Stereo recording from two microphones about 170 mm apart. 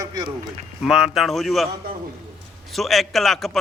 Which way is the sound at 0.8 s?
Centre (ahead or behind).